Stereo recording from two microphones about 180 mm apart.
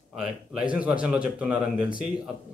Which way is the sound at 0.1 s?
Centre (ahead or behind).